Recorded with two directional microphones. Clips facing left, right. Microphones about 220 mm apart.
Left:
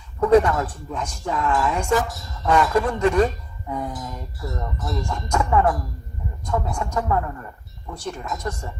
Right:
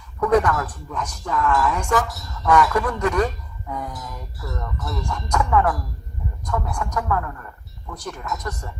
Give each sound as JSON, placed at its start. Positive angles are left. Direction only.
{"t": 0.2, "sound": "a woman's voice", "side_deg": 30}